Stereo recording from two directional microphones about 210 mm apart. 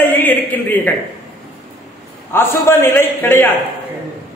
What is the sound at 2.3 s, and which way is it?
A man's voice, 10° left (ahead or behind).